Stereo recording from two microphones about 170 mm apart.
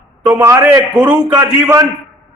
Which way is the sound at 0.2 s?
10° right (ahead or behind).